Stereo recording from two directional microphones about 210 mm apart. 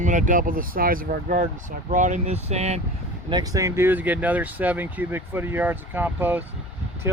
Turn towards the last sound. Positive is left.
turn(degrees=-10)  # may be behind; listen again after turning